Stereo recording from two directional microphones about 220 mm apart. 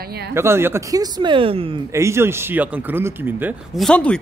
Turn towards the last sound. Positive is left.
turn(degrees=5)  # may be behind; listen again after turning